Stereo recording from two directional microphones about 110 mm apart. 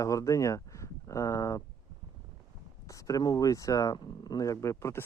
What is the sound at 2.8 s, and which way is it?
Speech, 30° left (ahead or behind).